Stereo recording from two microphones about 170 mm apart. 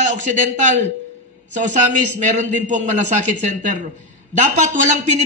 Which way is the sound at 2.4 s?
45° right (ahead or behind).